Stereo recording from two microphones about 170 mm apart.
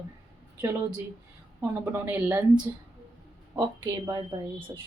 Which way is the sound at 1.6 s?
15° right (ahead or behind).